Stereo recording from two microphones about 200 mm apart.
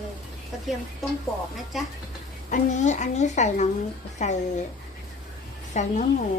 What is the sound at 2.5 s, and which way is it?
A child's voice, 35° left (ahead or behind).